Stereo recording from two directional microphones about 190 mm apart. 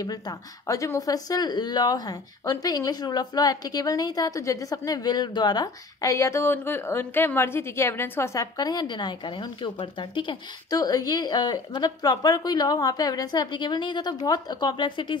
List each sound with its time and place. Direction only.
0.0 s speech: 20° left (ahead or behind)